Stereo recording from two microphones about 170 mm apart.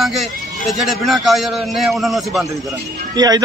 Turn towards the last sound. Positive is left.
turn(degrees=-20)  # may be behind; listen again after turning